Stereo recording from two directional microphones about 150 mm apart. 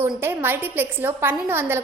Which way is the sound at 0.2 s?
15° right (ahead or behind).